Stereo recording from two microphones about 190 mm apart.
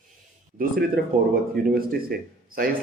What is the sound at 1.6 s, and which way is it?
A man's voice, 50° right (ahead or behind).